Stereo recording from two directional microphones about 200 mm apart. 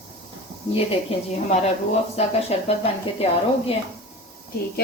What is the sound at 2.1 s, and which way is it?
Speech, 30° left (ahead or behind).